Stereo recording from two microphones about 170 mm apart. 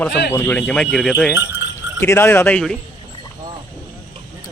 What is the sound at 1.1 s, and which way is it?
Speech, 10° right (ahead or behind).